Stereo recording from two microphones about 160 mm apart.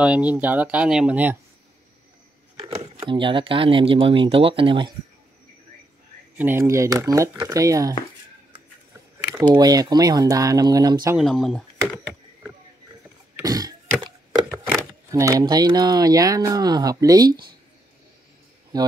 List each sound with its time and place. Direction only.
0.0 s speech: 10° right (ahead or behind)
3.0 s speech: 30° right (ahead or behind)
6.3 s speech: 10° right (ahead or behind)
9.5 s speech: 25° right (ahead or behind)
11.1 s speech: centre (ahead or behind)
13.4 s throat clearing: 25° right (ahead or behind)
15.0 s speech: 20° right (ahead or behind)
18.7 s speech: 25° right (ahead or behind)